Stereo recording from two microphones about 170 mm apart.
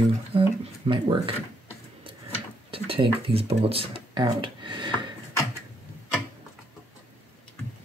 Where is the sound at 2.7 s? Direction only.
30° right (ahead or behind).